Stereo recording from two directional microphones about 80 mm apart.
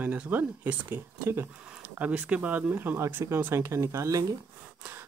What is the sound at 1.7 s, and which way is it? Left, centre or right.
Speech, centre.